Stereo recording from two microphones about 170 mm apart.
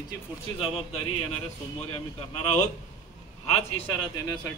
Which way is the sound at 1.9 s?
40° left (ahead or behind).